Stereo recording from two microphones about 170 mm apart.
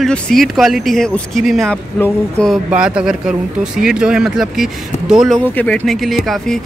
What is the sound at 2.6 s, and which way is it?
Speech, 5° right (ahead or behind).